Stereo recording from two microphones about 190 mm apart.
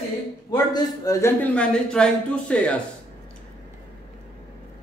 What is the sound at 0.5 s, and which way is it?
Speech, 20° left (ahead or behind).